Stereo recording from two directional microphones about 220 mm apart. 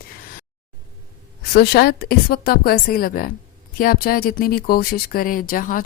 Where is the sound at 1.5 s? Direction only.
45° left (ahead or behind).